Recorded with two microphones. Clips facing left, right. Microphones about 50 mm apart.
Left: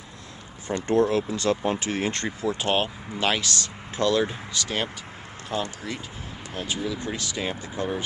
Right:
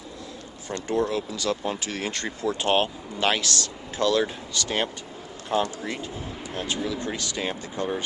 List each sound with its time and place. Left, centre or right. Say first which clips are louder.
0.7 s speech: left 4 dB; centre
1.1 s speech: left 3 dB; left
1.6 s speech: left 3 dB; left
2.2 s speech: right 1 dB; centre
5.5 s speech: right 4 dB; centre
6.5 s speech: even; centre